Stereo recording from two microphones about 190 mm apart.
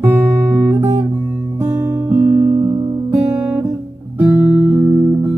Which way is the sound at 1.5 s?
15° right (ahead or behind).